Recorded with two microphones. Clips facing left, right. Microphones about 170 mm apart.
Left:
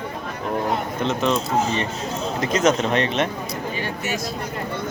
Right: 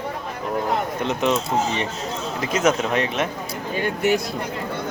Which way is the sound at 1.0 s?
15° right (ahead or behind).